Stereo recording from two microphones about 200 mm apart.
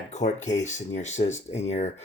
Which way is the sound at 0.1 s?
35° left (ahead or behind).